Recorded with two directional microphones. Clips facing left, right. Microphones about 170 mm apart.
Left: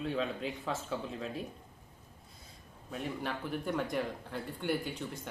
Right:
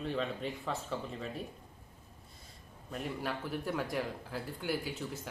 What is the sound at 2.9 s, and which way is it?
Speech, centre (ahead or behind).